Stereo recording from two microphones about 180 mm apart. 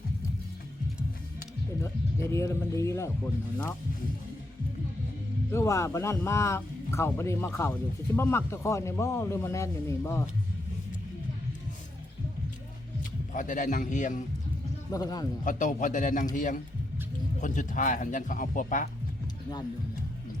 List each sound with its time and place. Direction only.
1.8 s speech: 15° left (ahead or behind)
5.5 s speech: 15° left (ahead or behind)
13.0 s a man's voice: 45° left (ahead or behind)
14.9 s speech: 20° left (ahead or behind)
15.4 s speech: 45° left (ahead or behind)